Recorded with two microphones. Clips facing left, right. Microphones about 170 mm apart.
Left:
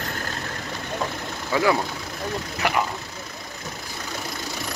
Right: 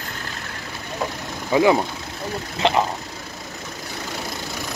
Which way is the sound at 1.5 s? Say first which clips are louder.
Right 5 dB; 20° right (ahead or behind).